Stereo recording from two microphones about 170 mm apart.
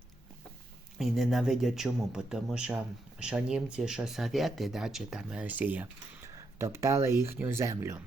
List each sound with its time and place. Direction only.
0.9 s speech: centre (ahead or behind); by 8.0 s 15° right (ahead or behind)